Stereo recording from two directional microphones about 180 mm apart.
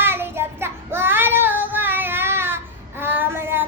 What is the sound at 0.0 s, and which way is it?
Child singing, 10° right (ahead or behind).